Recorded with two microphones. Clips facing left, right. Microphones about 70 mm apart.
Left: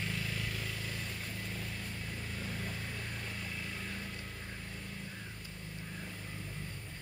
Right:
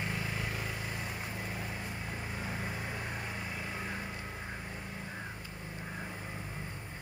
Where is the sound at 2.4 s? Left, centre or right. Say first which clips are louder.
Right 3 dB; right.